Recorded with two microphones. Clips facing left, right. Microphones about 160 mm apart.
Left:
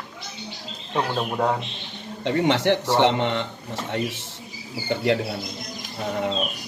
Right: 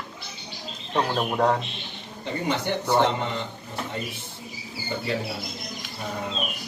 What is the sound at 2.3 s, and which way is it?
Speech, 80° left.